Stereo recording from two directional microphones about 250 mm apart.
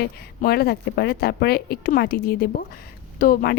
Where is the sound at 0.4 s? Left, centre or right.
Left.